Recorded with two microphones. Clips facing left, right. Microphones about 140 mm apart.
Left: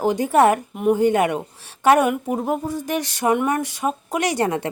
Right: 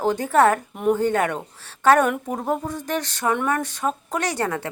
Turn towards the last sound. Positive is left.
turn(degrees=20)  # may be behind; listen again after turning